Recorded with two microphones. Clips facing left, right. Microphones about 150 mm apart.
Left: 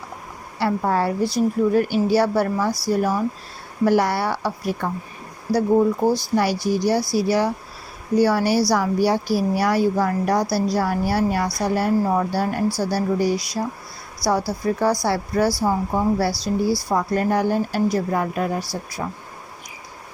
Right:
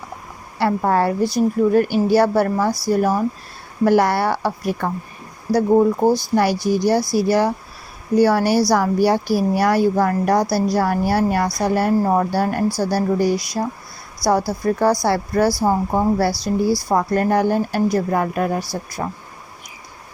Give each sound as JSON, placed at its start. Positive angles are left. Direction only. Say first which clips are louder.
{"t": 0.6, "sound": "a woman's voice", "louder": "right 3 dB", "side_deg": -55}
{"t": 16.3, "sound": "speech", "louder": "right 2 dB", "side_deg": -20}
{"t": 16.9, "sound": "a woman's voice", "louder": "right 4 dB", "side_deg": -50}